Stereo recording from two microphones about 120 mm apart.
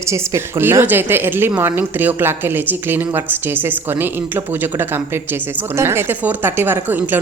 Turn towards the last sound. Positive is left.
turn(degrees=-15)  # may be behind; listen again after turning